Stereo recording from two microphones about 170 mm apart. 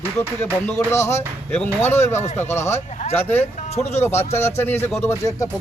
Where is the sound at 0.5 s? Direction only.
10° left (ahead or behind).